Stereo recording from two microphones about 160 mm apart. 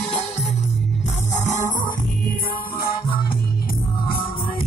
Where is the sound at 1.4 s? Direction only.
50° left (ahead or behind).